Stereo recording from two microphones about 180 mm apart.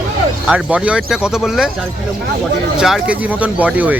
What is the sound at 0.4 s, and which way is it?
Speech, 5° right (ahead or behind).